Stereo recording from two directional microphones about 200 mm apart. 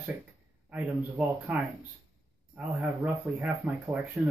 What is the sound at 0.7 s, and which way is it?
Speech, 5° right (ahead or behind).